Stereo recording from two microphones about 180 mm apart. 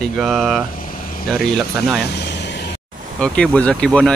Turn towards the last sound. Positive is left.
turn(degrees=5)  # may be behind; listen again after turning